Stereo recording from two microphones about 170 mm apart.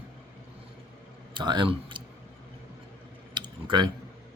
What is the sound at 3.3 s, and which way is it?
Tick-tock, 25° right (ahead or behind).